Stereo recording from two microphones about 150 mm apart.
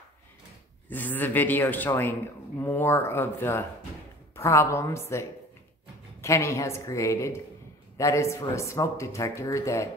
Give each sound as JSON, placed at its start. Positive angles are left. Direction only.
{"t": 0.8, "sound": "speech", "side_deg": 10}
{"t": 6.2, "sound": "speech", "side_deg": 20}